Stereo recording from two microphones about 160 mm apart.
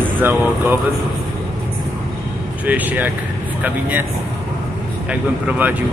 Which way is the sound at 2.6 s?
10° right (ahead or behind).